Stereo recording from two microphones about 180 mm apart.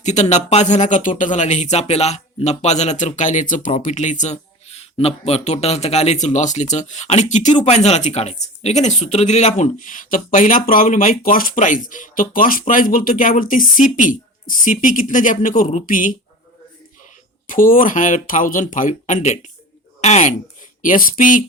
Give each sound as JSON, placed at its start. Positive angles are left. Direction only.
{"t": 0.0, "sound": "speech", "side_deg": 40}
{"t": 17.4, "sound": "speech", "side_deg": 50}
{"t": 20.0, "sound": "a sound", "side_deg": 40}
{"t": 20.8, "sound": "speech", "side_deg": 50}